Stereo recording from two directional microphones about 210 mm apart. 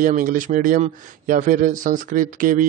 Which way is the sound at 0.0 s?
40° right (ahead or behind).